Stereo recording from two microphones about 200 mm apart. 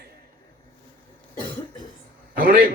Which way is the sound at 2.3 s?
50° right (ahead or behind).